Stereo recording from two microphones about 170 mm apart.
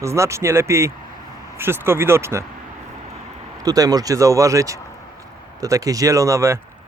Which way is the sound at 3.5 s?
20° right (ahead or behind).